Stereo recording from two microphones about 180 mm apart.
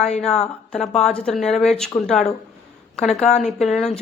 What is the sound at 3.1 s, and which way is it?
Speech, 35° left (ahead or behind).